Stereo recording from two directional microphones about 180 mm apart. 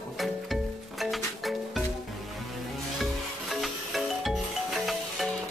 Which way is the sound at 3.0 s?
Centre (ahead or behind).